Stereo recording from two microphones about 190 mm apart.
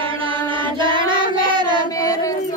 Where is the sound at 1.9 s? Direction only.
20° left (ahead or behind).